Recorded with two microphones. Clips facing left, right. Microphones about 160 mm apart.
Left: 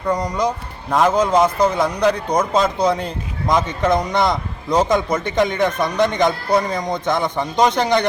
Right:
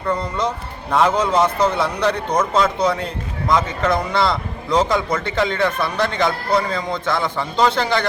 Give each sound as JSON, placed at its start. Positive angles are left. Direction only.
{"t": 0.1, "sound": "a man's voice", "side_deg": 15}
{"t": 3.5, "sound": "a man's voice", "side_deg": 20}